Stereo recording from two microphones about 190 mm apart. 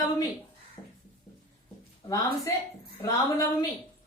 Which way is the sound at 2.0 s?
15° left (ahead or behind).